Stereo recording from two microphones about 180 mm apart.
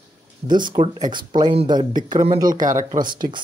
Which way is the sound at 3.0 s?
50° right (ahead or behind).